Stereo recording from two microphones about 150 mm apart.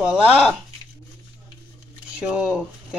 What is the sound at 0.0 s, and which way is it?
Speech, 5° right (ahead or behind).